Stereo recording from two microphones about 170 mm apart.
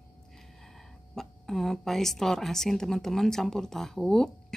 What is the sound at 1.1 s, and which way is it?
Speech, centre (ahead or behind).